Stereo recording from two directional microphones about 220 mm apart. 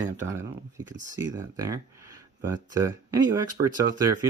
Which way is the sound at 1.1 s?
15° right (ahead or behind).